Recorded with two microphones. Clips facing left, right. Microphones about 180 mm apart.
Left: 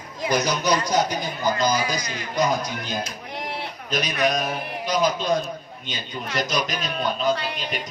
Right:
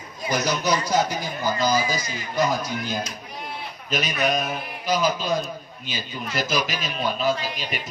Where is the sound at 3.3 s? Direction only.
80° left.